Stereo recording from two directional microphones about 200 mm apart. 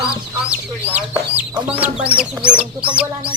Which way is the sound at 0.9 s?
5° right (ahead or behind).